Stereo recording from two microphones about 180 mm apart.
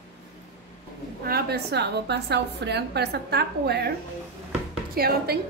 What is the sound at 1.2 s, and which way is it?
A woman's voice, 60° right (ahead or behind).